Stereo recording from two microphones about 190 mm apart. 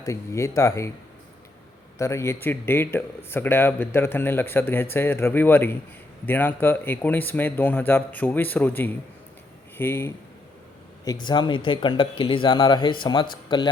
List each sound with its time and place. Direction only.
0.0 s speech: 15° left (ahead or behind)
2.0 s speech: 15° left (ahead or behind)